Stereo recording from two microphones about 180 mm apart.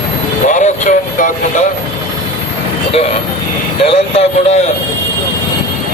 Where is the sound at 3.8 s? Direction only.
35° left (ahead or behind).